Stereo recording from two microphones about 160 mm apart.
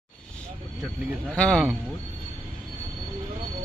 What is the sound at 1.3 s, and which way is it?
Speech, 5° left (ahead or behind).